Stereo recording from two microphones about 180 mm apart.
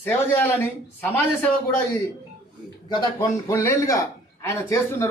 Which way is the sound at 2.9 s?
15° left (ahead or behind).